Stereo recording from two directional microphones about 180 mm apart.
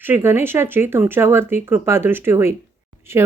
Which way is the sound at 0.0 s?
10° right (ahead or behind).